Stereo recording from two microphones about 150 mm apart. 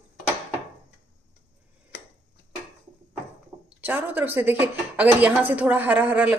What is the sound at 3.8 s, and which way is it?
A woman's voice, 15° right (ahead or behind).